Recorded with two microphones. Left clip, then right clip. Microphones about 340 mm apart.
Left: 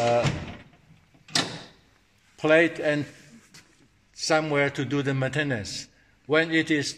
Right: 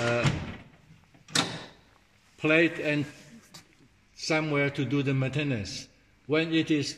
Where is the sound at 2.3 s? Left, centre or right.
Centre.